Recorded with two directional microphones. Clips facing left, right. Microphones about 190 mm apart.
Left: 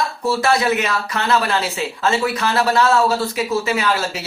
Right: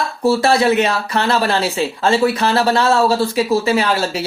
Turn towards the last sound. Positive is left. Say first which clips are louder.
# right 4 dB
turn(degrees=-30)  # may be behind; listen again after turning